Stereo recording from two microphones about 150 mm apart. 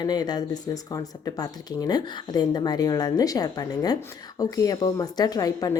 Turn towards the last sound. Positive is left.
turn(degrees=25)  # may be behind; listen again after turning